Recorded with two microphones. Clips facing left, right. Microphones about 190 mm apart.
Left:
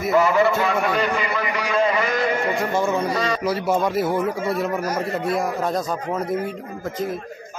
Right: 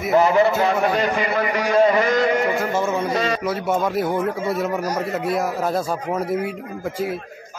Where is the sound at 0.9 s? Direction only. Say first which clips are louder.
Right 2 dB; 45° right (ahead or behind).